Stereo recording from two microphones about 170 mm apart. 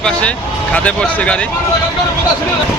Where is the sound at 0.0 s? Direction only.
5° left (ahead or behind).